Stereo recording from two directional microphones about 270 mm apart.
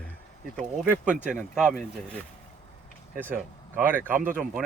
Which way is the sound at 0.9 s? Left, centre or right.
Centre.